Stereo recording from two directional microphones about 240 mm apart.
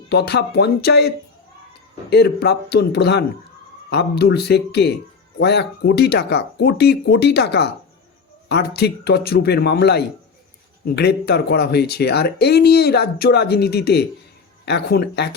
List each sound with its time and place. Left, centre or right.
0.1 s speech: left